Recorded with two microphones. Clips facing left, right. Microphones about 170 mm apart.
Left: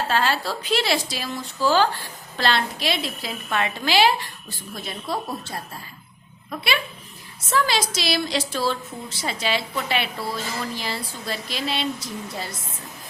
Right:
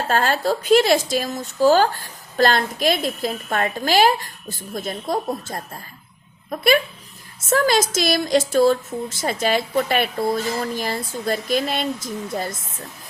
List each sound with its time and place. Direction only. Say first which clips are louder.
0.1 s speech: right 6 dB; 45° right (ahead or behind)
7.5 s speech: right 5 dB; 45° right (ahead or behind)